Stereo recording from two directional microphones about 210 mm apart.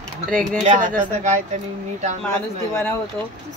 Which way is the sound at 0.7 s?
40° right (ahead or behind).